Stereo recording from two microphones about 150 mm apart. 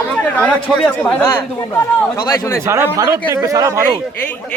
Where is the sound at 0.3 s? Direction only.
5° left (ahead or behind).